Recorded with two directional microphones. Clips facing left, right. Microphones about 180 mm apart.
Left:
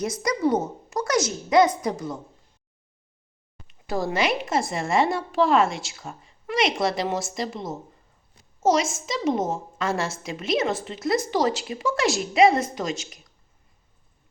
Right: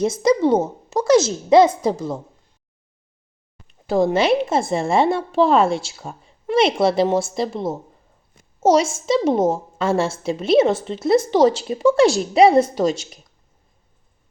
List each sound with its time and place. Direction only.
0.0 s a woman's voice: 25° right (ahead or behind)
3.9 s a woman's voice: 25° right (ahead or behind)